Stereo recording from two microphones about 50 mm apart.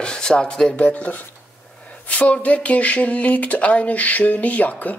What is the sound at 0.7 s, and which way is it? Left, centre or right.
Speech, left.